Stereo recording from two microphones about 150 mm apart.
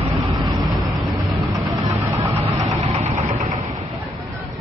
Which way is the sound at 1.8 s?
20° right (ahead or behind).